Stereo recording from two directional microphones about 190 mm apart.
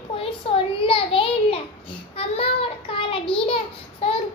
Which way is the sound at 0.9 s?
30° left (ahead or behind).